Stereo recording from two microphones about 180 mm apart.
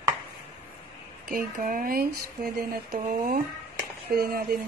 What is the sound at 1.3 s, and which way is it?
Speech, 50° right (ahead or behind).